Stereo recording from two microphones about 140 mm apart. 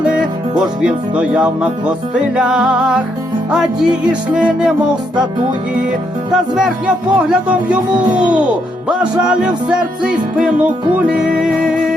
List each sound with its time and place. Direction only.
0.6 s speech: 5° right (ahead or behind)
2.1 s music: 5° right (ahead or behind)
3.5 s speech: 5° right (ahead or behind)
6.3 s speech: 5° right (ahead or behind)
8.9 s music: 5° right (ahead or behind)
9.6 s speech: 5° right (ahead or behind)